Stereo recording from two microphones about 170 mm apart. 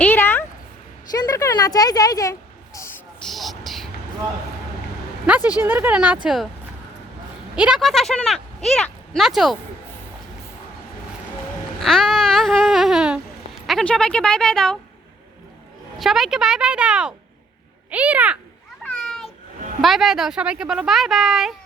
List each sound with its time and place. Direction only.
0.0 s a sound: 10° left (ahead or behind)
1.1 s speech: 20° left (ahead or behind)
3.2 s vehicle: centre (ahead or behind)
5.2 s speech: 10° right (ahead or behind)
7.5 s speech: 5° right (ahead or behind)
11.8 s a sound: centre (ahead or behind)
13.7 s speech: 5° left (ahead or behind)
16.0 s speech: centre (ahead or behind)
18.8 s a sound: 5° left (ahead or behind)
19.8 s speech: centre (ahead or behind)